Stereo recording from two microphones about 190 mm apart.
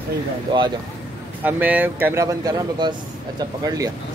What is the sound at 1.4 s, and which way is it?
Speech, 10° right (ahead or behind).